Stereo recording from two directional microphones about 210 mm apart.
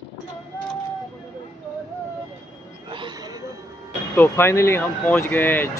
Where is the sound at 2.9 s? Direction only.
20° right (ahead or behind).